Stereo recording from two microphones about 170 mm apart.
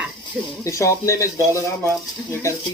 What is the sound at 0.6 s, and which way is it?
Speech, 20° left (ahead or behind).